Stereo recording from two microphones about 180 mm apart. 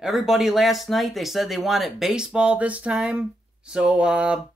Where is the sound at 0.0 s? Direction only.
Centre (ahead or behind).